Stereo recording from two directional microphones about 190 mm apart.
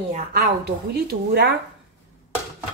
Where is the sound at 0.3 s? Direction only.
60° right (ahead or behind).